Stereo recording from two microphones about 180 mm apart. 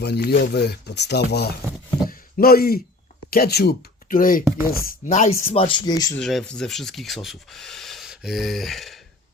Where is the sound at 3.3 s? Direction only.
60° left (ahead or behind); by 6.1 s 20° left (ahead or behind).